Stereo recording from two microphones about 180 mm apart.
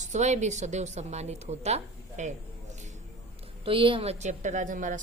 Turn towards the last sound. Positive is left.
turn(degrees=-45)  # may be behind; listen again after turning